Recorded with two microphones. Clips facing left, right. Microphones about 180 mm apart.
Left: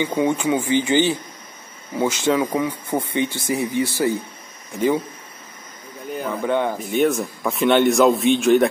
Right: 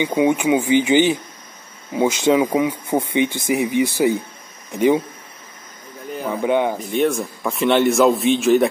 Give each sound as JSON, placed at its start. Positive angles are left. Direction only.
{"t": 0.0, "sound": "speech", "side_deg": -15}
{"t": 6.3, "sound": "speech", "side_deg": -15}
{"t": 6.8, "sound": "a man's voice", "side_deg": 0}